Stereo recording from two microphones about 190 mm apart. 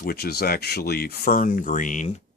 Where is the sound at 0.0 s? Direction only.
55° left (ahead or behind).